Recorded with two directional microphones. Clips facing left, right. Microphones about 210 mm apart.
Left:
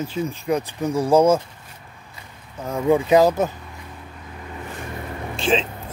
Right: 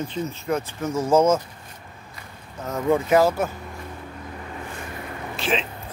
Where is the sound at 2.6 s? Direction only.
10° left (ahead or behind).